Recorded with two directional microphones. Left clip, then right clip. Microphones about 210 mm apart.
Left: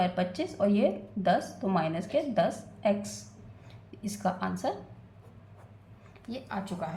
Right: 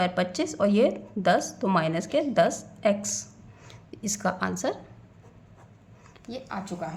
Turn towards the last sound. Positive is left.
turn(degrees=-15)  # may be behind; listen again after turning